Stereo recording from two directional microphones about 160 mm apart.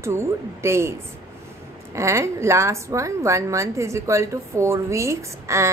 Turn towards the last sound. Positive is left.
turn(degrees=-20)  # may be behind; listen again after turning